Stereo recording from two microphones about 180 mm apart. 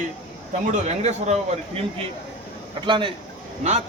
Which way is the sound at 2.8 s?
30° right (ahead or behind).